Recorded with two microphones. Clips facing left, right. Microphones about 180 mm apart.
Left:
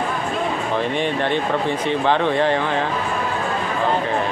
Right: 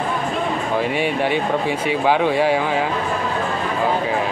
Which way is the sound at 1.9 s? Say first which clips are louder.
Right 2 dB; 10° right (ahead or behind).